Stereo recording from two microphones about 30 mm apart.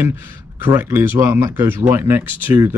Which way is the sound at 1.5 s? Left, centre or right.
Right.